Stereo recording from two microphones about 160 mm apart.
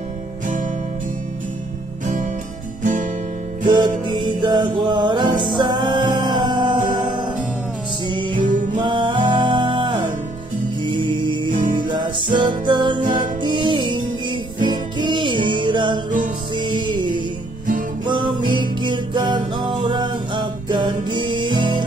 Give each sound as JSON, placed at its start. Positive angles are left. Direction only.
{"t": 2.8, "sound": "music", "side_deg": -50}
{"t": 3.6, "sound": "music", "side_deg": -25}
{"t": 8.4, "sound": "music", "side_deg": -55}
{"t": 8.8, "sound": "music", "side_deg": -30}